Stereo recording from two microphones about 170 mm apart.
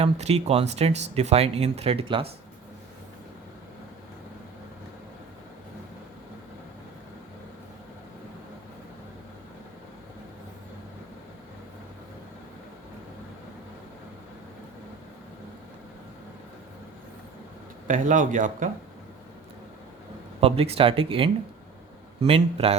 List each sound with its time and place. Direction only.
0.0 s speech: 40° right (ahead or behind)
17.8 s speech: 50° right (ahead or behind)
20.4 s speech: 35° right (ahead or behind)